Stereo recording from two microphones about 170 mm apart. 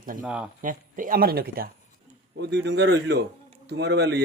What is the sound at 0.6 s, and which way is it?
Speech, 50° right (ahead or behind).